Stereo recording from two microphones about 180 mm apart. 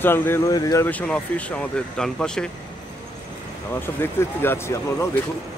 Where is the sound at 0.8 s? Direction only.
5° left (ahead or behind).